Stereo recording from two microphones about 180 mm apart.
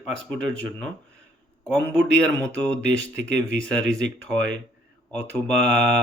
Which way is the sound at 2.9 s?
80° right.